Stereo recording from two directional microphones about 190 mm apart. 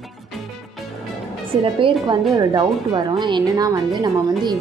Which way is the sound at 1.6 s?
30° right (ahead or behind).